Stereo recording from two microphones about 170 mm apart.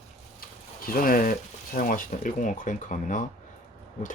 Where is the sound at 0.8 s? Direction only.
55° left (ahead or behind).